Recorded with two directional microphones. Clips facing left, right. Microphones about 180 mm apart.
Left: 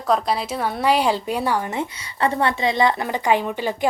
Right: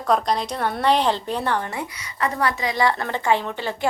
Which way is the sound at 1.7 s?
25° left (ahead or behind).